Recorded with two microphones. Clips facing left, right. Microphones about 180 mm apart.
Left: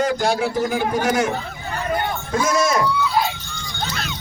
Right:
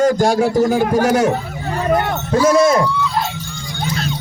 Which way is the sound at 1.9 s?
75° right (ahead or behind).